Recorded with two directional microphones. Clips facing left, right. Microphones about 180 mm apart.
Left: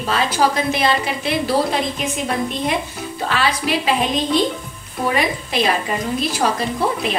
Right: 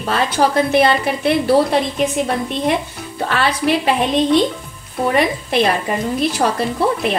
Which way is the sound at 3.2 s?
60° right (ahead or behind).